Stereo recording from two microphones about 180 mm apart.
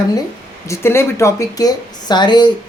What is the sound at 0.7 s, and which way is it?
Speech, 15° left (ahead or behind).